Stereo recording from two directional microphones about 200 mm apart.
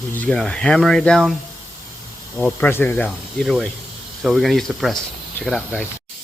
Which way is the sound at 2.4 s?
10° left (ahead or behind).